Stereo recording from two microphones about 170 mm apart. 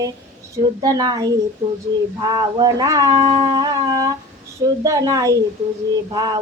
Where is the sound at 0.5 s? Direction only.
20° right (ahead or behind).